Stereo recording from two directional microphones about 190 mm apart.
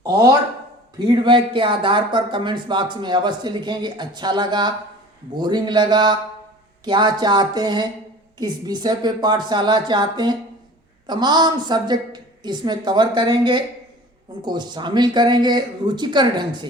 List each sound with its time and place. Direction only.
0.0 s speech: 20° right (ahead or behind)